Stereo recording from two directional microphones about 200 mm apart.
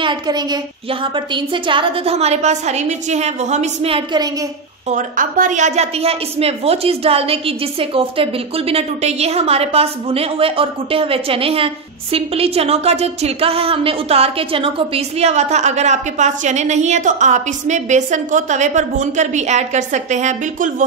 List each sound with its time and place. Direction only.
0.0 s a woman's voice: 20° right (ahead or behind)
4.8 s a woman's voice: 40° right (ahead or behind)